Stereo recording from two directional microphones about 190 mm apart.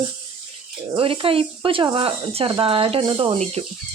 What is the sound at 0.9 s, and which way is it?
Speech, 30° right (ahead or behind).